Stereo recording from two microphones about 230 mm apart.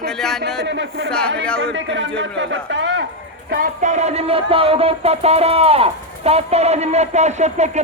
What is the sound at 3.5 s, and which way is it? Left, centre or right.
Music, right.